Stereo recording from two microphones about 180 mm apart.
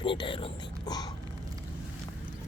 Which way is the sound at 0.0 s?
25° left (ahead or behind).